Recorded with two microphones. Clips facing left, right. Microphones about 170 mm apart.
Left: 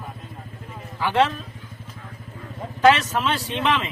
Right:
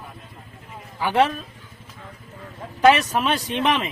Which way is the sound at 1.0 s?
15° right (ahead or behind).